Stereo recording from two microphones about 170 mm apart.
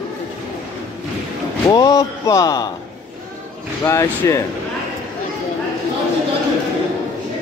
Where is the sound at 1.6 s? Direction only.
25° left (ahead or behind).